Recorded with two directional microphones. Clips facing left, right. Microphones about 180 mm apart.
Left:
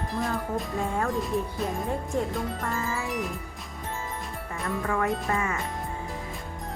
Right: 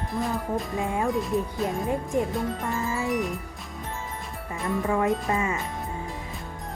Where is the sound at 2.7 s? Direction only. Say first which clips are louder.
Right 5 dB; centre (ahead or behind).